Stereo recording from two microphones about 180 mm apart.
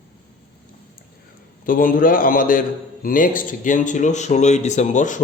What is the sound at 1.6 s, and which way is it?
Speech, 50° left (ahead or behind).